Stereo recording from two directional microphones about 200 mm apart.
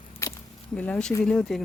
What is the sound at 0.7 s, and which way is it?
Speech, 5° left (ahead or behind).